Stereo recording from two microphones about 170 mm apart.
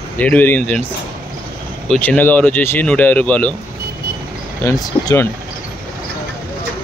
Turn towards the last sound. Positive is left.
turn(degrees=20)  # may be behind; listen again after turning